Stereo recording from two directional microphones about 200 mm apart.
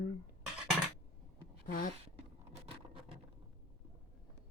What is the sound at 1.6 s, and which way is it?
Speech, 40° left (ahead or behind).